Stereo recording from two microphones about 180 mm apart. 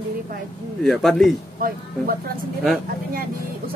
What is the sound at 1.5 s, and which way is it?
Speech, 50° right (ahead or behind).